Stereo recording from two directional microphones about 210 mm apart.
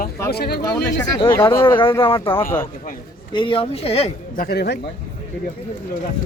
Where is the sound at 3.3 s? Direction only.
25° left (ahead or behind); by 4.7 s 50° left (ahead or behind).